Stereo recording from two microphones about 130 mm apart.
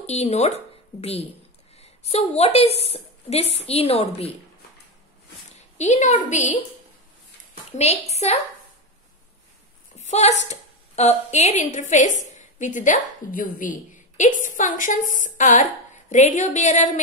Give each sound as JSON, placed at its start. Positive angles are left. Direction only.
{"t": 0.0, "sound": "a woman's voice", "side_deg": 55}
{"t": 5.8, "sound": "a woman's voice", "side_deg": 65}
{"t": 7.7, "sound": "a woman's voice", "side_deg": 55}
{"t": 9.9, "sound": "a sound", "side_deg": 60}
{"t": 10.5, "sound": "a woman's voice", "side_deg": 60}